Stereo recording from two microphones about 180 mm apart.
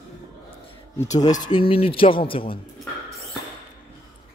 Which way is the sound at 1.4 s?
25° left (ahead or behind).